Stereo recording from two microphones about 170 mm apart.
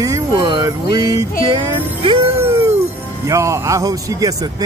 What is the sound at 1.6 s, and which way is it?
Music, 30° right (ahead or behind).